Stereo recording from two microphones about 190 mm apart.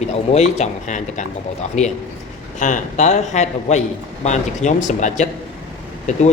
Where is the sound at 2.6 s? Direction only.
40° left (ahead or behind).